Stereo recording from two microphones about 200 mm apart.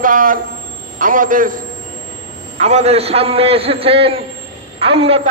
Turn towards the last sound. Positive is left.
turn(degrees=-30)  # may be behind; listen again after turning